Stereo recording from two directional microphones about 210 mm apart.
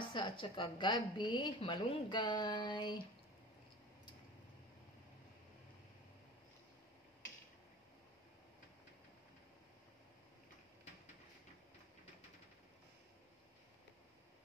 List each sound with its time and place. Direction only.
0.0 s a woman's voice: 25° left (ahead or behind)